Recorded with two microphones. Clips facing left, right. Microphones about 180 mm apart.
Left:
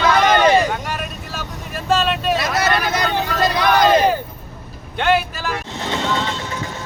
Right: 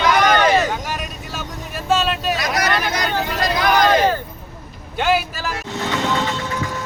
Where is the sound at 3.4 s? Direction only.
25° left (ahead or behind).